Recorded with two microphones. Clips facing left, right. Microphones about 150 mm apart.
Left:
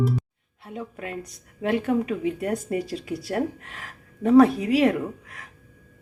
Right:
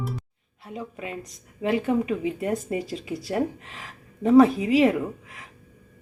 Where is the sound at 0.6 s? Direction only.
Centre (ahead or behind).